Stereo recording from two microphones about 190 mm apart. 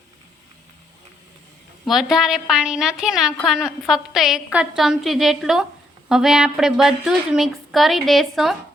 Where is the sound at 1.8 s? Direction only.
Centre (ahead or behind).